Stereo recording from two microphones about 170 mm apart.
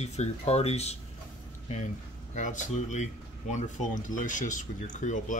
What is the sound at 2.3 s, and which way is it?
Speech, 45° left (ahead or behind).